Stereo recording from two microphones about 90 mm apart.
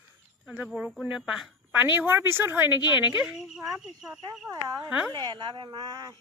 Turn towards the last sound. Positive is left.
turn(degrees=-50)  # may be behind; listen again after turning